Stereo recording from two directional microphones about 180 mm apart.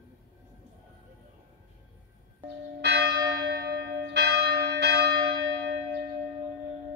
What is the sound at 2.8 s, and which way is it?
Church bell, 70° right (ahead or behind).